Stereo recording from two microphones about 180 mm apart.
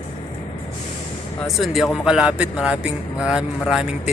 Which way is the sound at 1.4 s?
Centre (ahead or behind).